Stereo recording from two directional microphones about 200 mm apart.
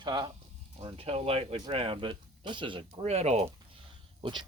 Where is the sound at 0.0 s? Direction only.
25° right (ahead or behind).